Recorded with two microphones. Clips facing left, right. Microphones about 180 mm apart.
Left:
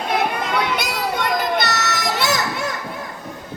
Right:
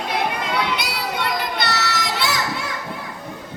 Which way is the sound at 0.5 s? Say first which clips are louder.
Left 2 dB; 45° left (ahead or behind).